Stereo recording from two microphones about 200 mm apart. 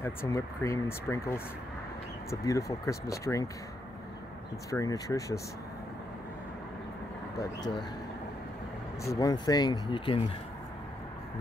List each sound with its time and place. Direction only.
0.0 s speech: 10° left (ahead or behind)
2.4 s speech: 15° left (ahead or behind)
4.6 s speech: 15° left (ahead or behind)
9.0 s speech: 15° left (ahead or behind)